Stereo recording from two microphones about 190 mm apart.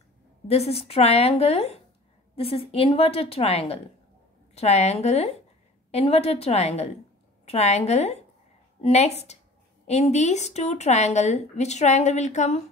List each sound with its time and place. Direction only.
0.5 s speech: 35° left (ahead or behind)